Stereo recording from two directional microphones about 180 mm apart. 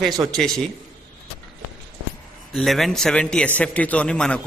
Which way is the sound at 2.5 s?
Centre (ahead or behind).